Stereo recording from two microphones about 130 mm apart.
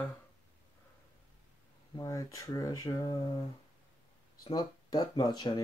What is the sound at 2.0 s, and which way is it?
Speech, 25° left (ahead or behind).